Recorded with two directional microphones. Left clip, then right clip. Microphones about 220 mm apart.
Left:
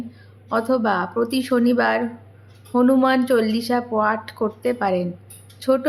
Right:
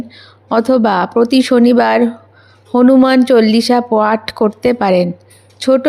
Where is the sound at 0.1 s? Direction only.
35° right (ahead or behind).